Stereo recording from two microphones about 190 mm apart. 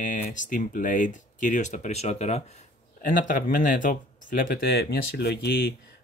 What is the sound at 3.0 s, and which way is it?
Speech, 45° left (ahead or behind).